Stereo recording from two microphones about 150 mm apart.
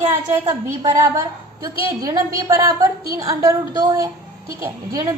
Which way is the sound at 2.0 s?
25° right (ahead or behind).